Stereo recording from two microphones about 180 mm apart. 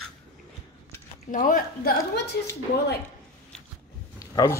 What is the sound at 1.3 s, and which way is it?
Speech, 50° left (ahead or behind).